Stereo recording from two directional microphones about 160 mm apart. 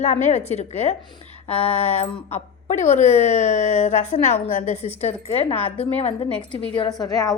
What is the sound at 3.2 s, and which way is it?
Speech, 45° left (ahead or behind).